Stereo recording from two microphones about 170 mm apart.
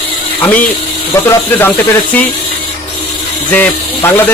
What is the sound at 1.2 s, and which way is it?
Speech, 15° left (ahead or behind).